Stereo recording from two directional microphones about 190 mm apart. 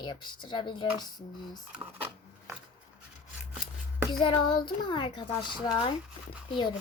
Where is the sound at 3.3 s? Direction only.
5° right (ahead or behind).